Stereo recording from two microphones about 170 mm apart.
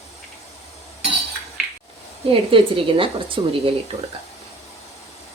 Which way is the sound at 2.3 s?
30° right (ahead or behind).